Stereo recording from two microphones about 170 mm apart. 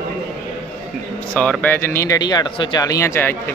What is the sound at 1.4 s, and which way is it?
Speech, 10° left (ahead or behind).